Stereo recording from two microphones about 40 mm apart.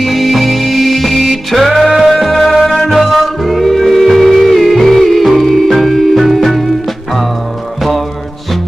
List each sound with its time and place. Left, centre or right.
0.0 s music: centre